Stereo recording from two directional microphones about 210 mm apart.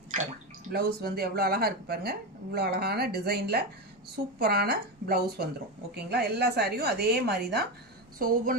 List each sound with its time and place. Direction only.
0.1 s speech: 35° right (ahead or behind)
0.7 s speech: 50° right (ahead or behind)